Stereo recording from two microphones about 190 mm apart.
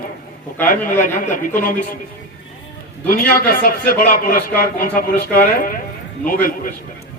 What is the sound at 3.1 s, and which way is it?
A man's voice, 50° left (ahead or behind).